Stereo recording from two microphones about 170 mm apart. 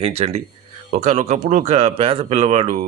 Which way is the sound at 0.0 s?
35° right (ahead or behind).